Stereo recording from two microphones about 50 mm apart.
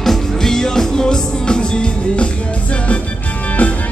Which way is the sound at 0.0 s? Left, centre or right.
Centre.